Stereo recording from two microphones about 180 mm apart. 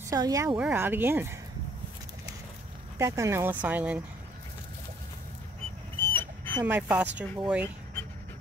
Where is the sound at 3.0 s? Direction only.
15° right (ahead or behind).